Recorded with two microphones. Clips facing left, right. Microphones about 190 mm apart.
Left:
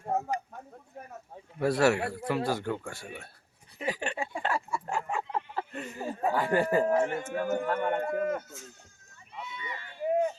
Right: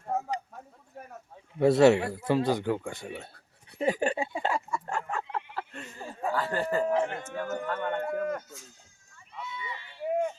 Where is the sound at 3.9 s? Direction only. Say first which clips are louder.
Right 6 dB; 40° right (ahead or behind).